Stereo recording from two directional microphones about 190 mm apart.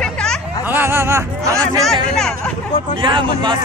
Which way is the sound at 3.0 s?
25° right (ahead or behind).